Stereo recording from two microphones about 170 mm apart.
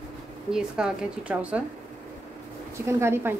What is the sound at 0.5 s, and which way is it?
Speech, 5° right (ahead or behind).